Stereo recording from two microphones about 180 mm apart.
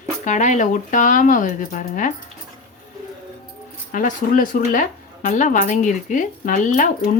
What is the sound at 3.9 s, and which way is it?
Speech, 50° left (ahead or behind).